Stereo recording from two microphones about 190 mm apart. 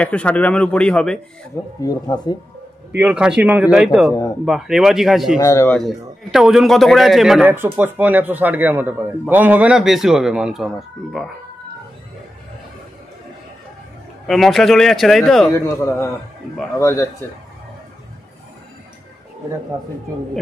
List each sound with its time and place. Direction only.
0.0 s a man's voice: 5° left (ahead or behind)
1.5 s speech: 20° left (ahead or behind)
3.0 s a man's voice: 5° right (ahead or behind)
5.4 s speech: 15° left (ahead or behind)
5.8 s a man's voice: centre (ahead or behind)
14.2 s a man's voice: centre (ahead or behind)
15.5 s speech: 15° left (ahead or behind)